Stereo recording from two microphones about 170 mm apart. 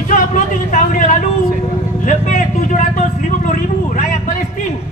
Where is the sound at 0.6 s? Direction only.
50° left (ahead or behind).